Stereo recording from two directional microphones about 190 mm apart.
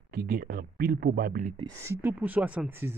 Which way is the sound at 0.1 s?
50° right (ahead or behind).